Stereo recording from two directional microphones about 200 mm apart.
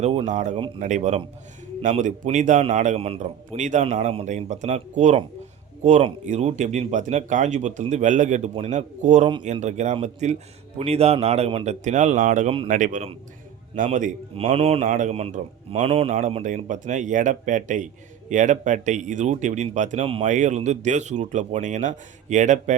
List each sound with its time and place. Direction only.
0.0 s speech: 30° right (ahead or behind)